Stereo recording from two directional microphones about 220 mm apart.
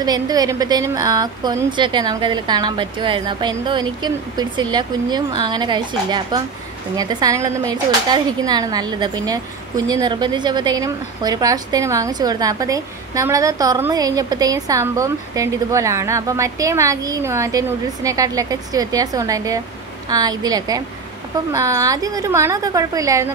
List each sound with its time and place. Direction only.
0.0 s a woman's voice: 15° right (ahead or behind)